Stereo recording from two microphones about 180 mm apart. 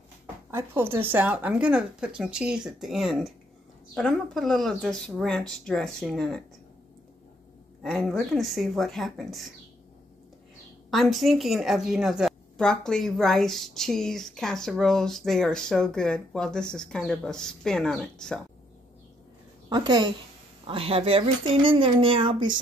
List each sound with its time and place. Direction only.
0.5 s a woman's voice: 10° right (ahead or behind)
7.8 s a woman's voice: centre (ahead or behind)
10.9 s a woman's voice: centre (ahead or behind)
19.7 s speech: 25° right (ahead or behind)